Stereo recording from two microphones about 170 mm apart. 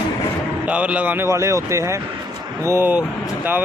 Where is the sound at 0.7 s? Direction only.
10° right (ahead or behind).